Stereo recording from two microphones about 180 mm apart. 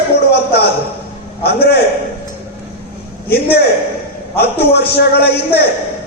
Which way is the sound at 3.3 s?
60° left (ahead or behind).